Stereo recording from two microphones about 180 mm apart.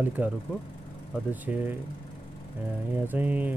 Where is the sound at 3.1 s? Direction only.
10° right (ahead or behind).